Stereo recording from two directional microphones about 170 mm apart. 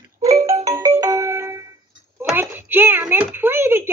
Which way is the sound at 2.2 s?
10° right (ahead or behind).